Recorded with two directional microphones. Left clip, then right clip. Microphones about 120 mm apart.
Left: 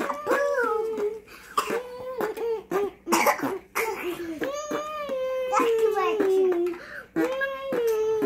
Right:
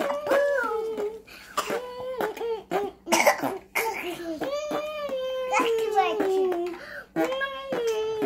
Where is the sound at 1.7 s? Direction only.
15° right (ahead or behind).